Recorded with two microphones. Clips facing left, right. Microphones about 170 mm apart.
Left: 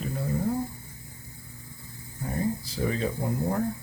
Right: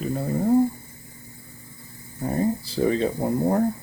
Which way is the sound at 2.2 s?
35° right (ahead or behind).